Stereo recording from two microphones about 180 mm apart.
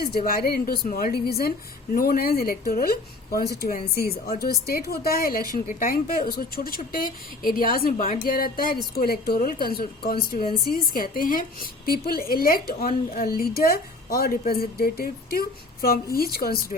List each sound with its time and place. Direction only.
0.0 s a woman's voice: 55° left (ahead or behind)